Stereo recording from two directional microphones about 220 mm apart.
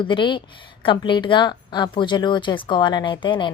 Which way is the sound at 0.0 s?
20° left (ahead or behind).